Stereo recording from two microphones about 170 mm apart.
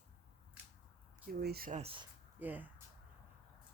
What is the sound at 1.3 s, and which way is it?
Speech, 65° right (ahead or behind).